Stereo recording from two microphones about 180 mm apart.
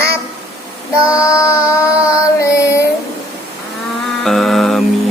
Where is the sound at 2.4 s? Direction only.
15° left (ahead or behind).